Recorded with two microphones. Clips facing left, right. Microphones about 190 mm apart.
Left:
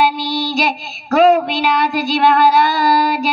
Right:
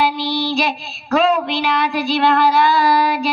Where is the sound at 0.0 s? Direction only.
40° left (ahead or behind).